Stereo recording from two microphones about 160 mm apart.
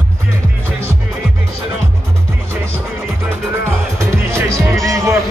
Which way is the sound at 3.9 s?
15° right (ahead or behind).